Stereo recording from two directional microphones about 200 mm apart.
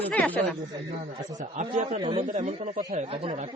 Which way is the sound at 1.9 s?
25° right (ahead or behind).